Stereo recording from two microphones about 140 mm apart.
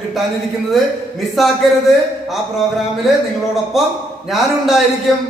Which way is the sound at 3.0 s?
Centre (ahead or behind).